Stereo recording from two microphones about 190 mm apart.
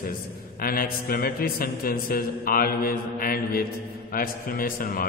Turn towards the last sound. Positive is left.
turn(degrees=45)  # may be behind; listen again after turning